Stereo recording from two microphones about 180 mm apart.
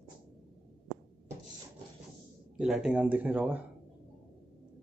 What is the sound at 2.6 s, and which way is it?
Speech, 5° right (ahead or behind).